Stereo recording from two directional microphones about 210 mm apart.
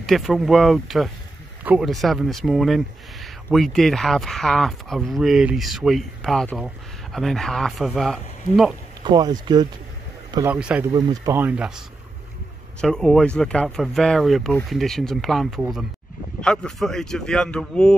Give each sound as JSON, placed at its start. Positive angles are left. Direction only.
{"t": 0.0, "sound": "speech", "side_deg": 0}
{"t": 9.1, "sound": "speech", "side_deg": -20}
{"t": 10.9, "sound": "speech", "side_deg": -20}
{"t": 12.8, "sound": "speech", "side_deg": 0}